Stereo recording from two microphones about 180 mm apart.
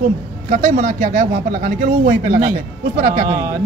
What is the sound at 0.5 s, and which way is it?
Speech, 45° right (ahead or behind).